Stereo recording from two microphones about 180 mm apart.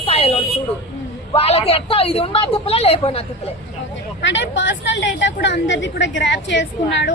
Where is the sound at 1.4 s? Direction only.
35° left (ahead or behind).